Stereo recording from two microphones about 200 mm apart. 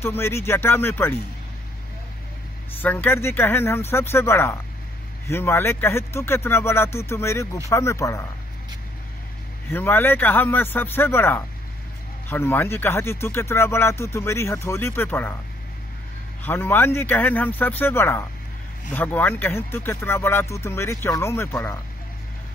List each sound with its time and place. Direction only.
0.0 s speech: 10° left (ahead or behind)
2.8 s speech: 10° left (ahead or behind)
9.7 s speech: 10° left (ahead or behind)
16.4 s speech: 10° left (ahead or behind)